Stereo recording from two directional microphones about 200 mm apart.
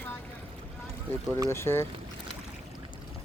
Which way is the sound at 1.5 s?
10° left (ahead or behind).